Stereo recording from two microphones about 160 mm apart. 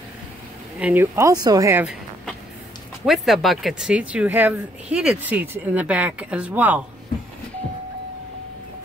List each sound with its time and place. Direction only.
0.7 s speech: 10° right (ahead or behind)
3.1 s speech: centre (ahead or behind)